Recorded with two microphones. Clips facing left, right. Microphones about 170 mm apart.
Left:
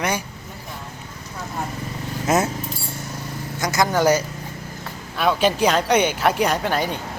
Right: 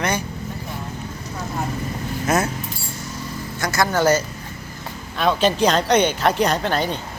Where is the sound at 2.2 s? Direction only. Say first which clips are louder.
Left 1 dB; 20° left (ahead or behind).